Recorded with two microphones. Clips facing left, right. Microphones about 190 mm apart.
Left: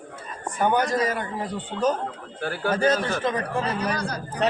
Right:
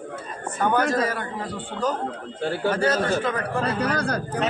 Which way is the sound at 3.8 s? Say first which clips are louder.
Right 3 dB; 55° right (ahead or behind).